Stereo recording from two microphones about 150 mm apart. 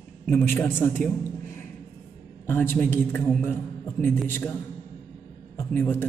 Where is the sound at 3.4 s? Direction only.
15° left (ahead or behind).